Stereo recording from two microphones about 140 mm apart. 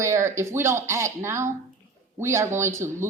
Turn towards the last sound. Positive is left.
turn(degrees=-20)  # may be behind; listen again after turning